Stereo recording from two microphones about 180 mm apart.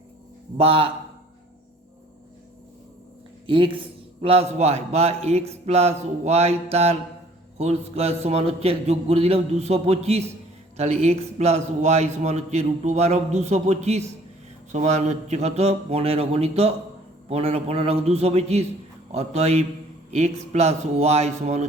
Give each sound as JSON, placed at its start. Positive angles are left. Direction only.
{"t": 0.5, "sound": "a man's voice", "side_deg": -30}
{"t": 3.4, "sound": "a man's voice", "side_deg": -30}